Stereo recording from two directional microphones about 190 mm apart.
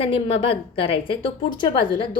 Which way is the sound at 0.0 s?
30° left (ahead or behind).